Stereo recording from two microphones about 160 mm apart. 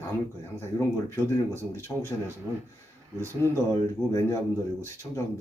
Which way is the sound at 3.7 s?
20° left (ahead or behind).